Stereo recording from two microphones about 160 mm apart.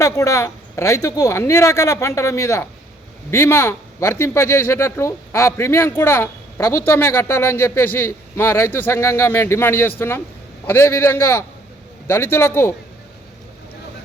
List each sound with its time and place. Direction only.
0.0 s speech: 20° left (ahead or behind)